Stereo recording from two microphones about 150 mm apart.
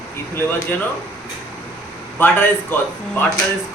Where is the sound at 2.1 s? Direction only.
15° left (ahead or behind).